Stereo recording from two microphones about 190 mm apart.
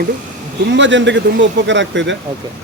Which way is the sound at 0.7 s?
75° right (ahead or behind).